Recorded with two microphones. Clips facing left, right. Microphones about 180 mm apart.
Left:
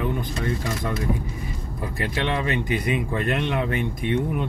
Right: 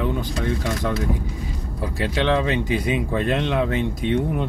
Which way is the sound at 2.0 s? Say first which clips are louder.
Right 5 dB; 90° right.